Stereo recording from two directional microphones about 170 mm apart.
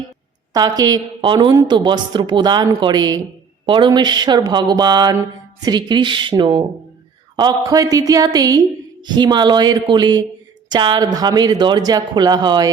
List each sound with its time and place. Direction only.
0.5 s speech: 20° right (ahead or behind)